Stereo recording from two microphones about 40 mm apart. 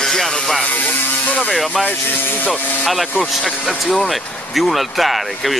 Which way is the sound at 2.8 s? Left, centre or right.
Centre.